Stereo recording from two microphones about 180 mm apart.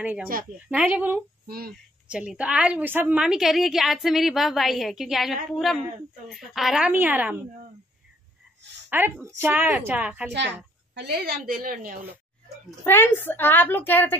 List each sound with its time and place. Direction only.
0.0 s a woman's voice: 10° right (ahead or behind)
8.9 s a woman's voice: 10° right (ahead or behind)
11.0 s a woman's voice: 60° right (ahead or behind)
12.8 s a woman's voice: 15° left (ahead or behind)